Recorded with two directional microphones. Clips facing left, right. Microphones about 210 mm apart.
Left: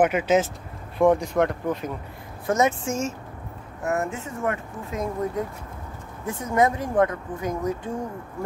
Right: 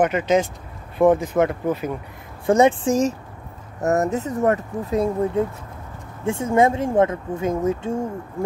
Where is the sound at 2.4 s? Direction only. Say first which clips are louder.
Right 6 dB; 30° right (ahead or behind).